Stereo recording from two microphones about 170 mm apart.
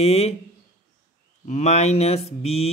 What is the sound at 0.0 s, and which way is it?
Speech, 40° left (ahead or behind).